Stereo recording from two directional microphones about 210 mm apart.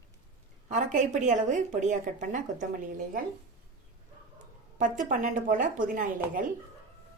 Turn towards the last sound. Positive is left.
turn(degrees=-40)  # may be behind; listen again after turning